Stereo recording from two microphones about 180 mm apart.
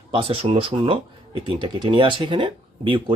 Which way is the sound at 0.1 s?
30° right (ahead or behind).